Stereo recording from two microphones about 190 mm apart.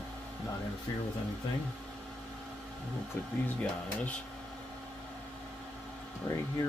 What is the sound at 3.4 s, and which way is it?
Speech, 5° left (ahead or behind).